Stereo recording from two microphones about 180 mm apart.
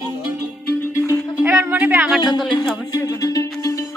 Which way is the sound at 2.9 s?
20° left (ahead or behind).